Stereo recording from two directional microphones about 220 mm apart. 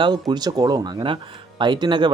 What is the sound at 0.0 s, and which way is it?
Speech, 20° right (ahead or behind).